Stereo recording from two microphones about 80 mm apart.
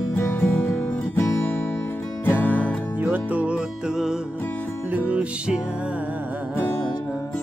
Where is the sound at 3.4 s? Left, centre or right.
Centre.